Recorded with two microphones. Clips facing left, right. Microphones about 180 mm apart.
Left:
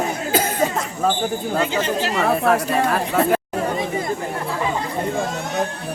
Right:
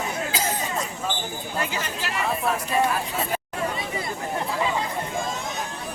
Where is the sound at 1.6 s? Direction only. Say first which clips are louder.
Left 8 dB; 25° left (ahead or behind).